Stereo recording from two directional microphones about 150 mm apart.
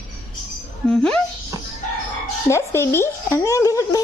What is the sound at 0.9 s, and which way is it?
Speech, 5° left (ahead or behind).